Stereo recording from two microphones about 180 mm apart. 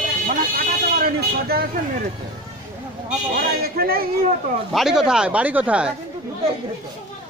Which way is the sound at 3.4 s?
55° right (ahead or behind).